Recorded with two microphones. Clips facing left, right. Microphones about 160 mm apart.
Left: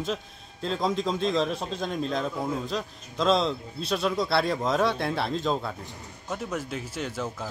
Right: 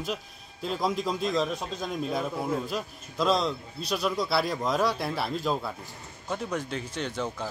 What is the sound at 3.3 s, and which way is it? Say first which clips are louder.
Speech: left 4 dB; 30° left (ahead or behind).